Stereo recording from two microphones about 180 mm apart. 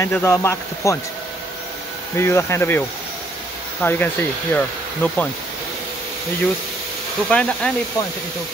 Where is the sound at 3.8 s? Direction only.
10° left (ahead or behind).